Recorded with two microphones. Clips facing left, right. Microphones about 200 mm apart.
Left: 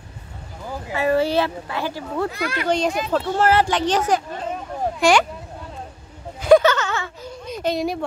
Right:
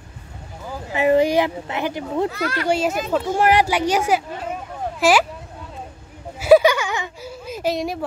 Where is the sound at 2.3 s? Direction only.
15° left (ahead or behind).